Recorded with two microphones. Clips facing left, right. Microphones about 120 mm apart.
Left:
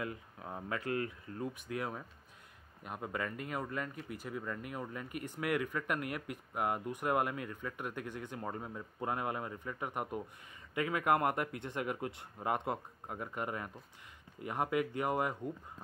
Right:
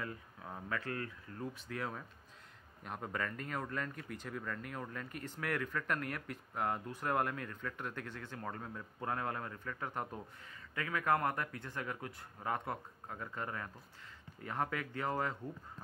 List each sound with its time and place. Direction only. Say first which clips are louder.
0.0 s speech: left 3 dB; 20° left (ahead or behind)